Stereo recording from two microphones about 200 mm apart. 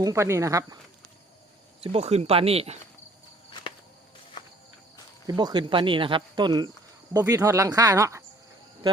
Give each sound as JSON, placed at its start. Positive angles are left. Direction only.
{"t": 0.0, "sound": "speech", "side_deg": -15}
{"t": 1.8, "sound": "speech", "side_deg": -30}
{"t": 5.2, "sound": "speech", "side_deg": -20}